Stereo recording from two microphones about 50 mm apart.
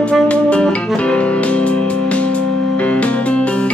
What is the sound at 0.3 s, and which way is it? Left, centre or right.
Music, left.